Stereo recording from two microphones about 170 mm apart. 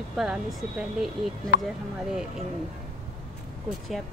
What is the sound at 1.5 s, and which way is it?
Speech, 75° left (ahead or behind).